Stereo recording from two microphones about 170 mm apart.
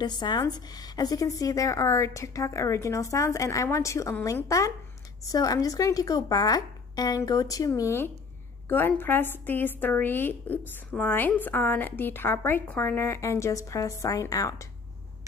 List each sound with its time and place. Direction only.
0.0 s a woman's voice: 25° left (ahead or behind)